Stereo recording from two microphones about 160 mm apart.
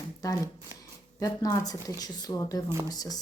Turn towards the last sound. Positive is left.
turn(degrees=25)  # may be behind; listen again after turning